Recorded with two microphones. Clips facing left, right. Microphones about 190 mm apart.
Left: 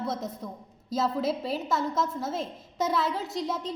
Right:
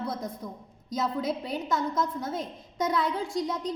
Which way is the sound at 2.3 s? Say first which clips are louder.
Left 1 dB; 25° left (ahead or behind).